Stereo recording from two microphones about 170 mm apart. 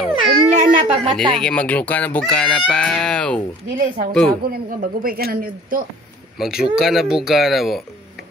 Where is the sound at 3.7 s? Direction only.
50° right (ahead or behind).